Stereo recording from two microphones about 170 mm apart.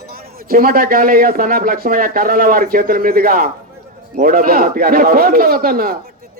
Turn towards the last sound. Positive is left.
turn(degrees=-60)  # may be behind; listen again after turning